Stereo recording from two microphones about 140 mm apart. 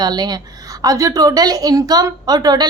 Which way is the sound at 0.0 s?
30° right (ahead or behind).